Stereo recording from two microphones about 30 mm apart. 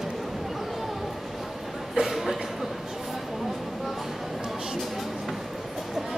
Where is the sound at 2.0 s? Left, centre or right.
Centre.